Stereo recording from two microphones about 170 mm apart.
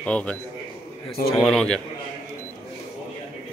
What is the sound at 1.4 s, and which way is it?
Speech, centre (ahead or behind).